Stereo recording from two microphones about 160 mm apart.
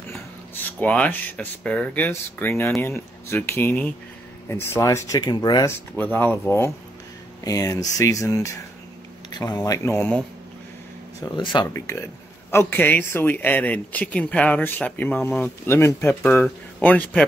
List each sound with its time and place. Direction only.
0.7 s speech: 10° left (ahead or behind); by 5.8 s 25° left (ahead or behind)
5.9 s speech: 10° left (ahead or behind)
9.7 s speech: 15° left (ahead or behind)
11.1 s speech: 30° left (ahead or behind)
12.4 s speech: 15° left (ahead or behind)